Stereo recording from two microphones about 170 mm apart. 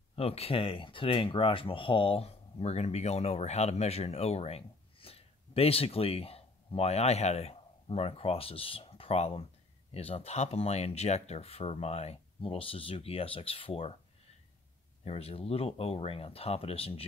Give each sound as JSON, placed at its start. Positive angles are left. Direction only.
{"t": 0.1, "sound": "speech", "side_deg": 35}
{"t": 15.0, "sound": "speech", "side_deg": 35}